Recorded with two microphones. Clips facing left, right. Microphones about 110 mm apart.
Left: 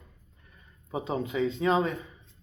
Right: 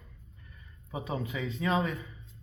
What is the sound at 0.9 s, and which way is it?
Speech, 25° left (ahead or behind).